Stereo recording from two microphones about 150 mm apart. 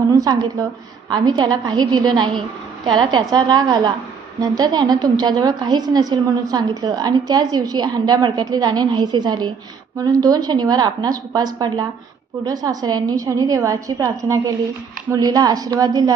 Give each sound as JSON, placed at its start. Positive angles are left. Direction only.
{"t": 0.1, "sound": "a woman's voice", "side_deg": -25}